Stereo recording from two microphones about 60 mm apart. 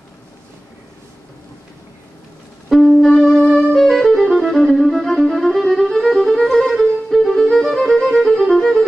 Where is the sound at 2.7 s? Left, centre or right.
Centre.